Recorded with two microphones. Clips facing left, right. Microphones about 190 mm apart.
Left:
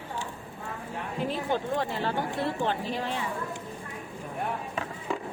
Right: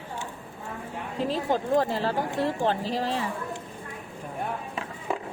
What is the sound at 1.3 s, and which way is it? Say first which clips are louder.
A woman's voice: right 6 dB; 35° right (ahead or behind).